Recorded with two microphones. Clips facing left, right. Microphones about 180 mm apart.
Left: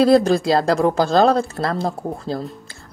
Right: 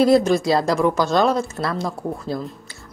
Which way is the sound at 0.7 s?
35° left (ahead or behind).